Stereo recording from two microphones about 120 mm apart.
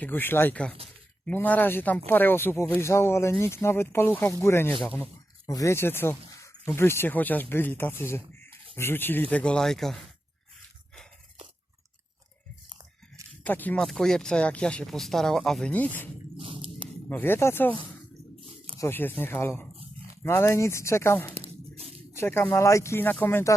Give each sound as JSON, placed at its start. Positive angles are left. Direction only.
{"t": 0.0, "sound": "speech", "side_deg": 15}
{"t": 13.4, "sound": "speech", "side_deg": 15}
{"t": 13.8, "sound": "speech", "side_deg": 5}
{"t": 15.7, "sound": "speech", "side_deg": 15}
{"t": 16.4, "sound": "biting", "side_deg": -45}
{"t": 17.1, "sound": "speech", "side_deg": 15}
{"t": 18.3, "sound": "a sound", "side_deg": -50}
{"t": 18.8, "sound": "speech", "side_deg": 20}
{"t": 21.3, "sound": "a sound", "side_deg": -55}
{"t": 22.1, "sound": "speech", "side_deg": 20}